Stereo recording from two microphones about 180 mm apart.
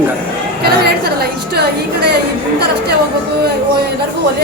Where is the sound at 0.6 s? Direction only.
60° right (ahead or behind).